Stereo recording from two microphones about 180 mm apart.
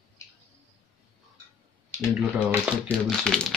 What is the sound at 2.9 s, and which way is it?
Speech, 5° left (ahead or behind).